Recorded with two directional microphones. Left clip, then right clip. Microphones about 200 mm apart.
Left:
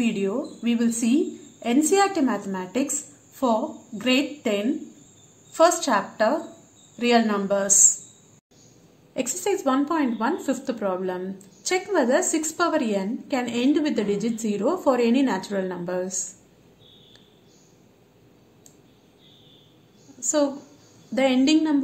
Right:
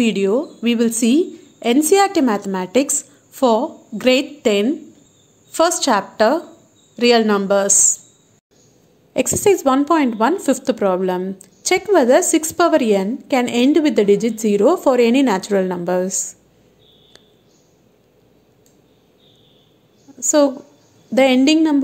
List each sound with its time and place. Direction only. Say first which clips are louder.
0.0 s a woman's voice: right 9 dB; 45° right (ahead or behind)
9.1 s a woman's voice: right 10 dB; 40° right (ahead or behind)
20.2 s a woman's voice: right 8 dB; 40° right (ahead or behind)